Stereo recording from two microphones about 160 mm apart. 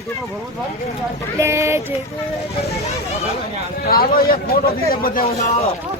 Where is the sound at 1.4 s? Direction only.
20° right (ahead or behind).